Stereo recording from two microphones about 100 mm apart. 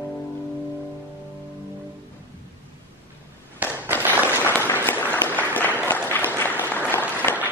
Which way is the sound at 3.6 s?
20° right (ahead or behind).